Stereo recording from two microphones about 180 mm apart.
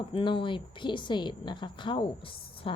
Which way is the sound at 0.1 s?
30° left (ahead or behind).